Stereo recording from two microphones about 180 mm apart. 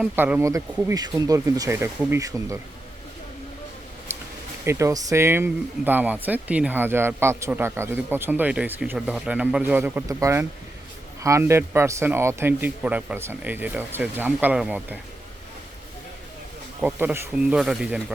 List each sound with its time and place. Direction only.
0.0 s speech: 10° right (ahead or behind)
4.6 s speech: 15° right (ahead or behind)
16.8 s speech: 10° right (ahead or behind)